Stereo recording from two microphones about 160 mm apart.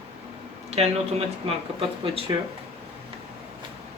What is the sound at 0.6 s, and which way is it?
Speech, 40° right (ahead or behind).